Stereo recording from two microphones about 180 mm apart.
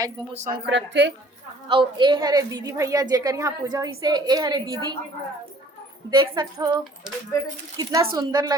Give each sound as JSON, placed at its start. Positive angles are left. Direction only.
{"t": 0.3, "sound": "speech", "side_deg": -45}
{"t": 0.6, "sound": "a woman's voice", "side_deg": -75}
{"t": 1.6, "sound": "a woman's voice", "side_deg": -25}
{"t": 6.1, "sound": "a woman's voice", "side_deg": -25}
{"t": 7.8, "sound": "a woman's voice", "side_deg": -20}